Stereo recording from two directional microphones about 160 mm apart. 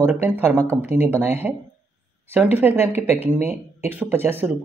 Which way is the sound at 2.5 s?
15° right (ahead or behind).